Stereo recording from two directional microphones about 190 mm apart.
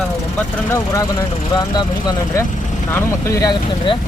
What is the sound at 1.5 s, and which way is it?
Speech, 20° left (ahead or behind).